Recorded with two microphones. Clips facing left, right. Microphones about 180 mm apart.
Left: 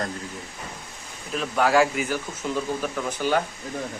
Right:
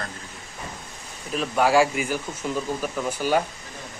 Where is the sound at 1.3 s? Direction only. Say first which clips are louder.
Right 1 dB; 5° right (ahead or behind).